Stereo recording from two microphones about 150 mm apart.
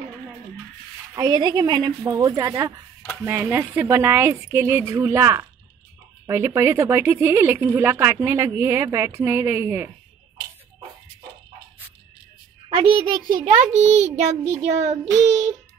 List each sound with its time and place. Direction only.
1.1 s speech: 25° right (ahead or behind)
12.6 s a child's voice: 35° right (ahead or behind)
13.5 s child singing: 55° right (ahead or behind)